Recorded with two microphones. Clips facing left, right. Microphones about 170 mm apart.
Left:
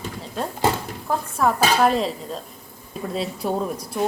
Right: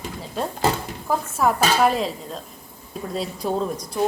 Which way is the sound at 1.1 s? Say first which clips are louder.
Even; centre (ahead or behind).